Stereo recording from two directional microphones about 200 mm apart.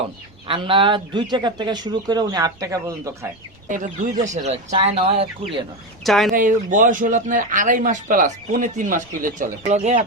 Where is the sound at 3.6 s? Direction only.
40° right (ahead or behind).